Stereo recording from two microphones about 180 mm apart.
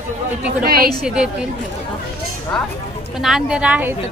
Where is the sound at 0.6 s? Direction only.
55° right (ahead or behind).